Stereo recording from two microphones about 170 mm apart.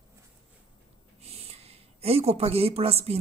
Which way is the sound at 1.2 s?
35° right (ahead or behind).